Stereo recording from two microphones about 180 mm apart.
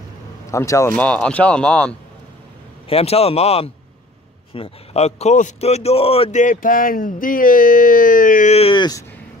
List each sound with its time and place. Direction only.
0.5 s speech: 15° left (ahead or behind)
2.9 s a man's voice: 35° left (ahead or behind)
6.4 s speech: 50° left (ahead or behind); by 9.0 s 25° left (ahead or behind)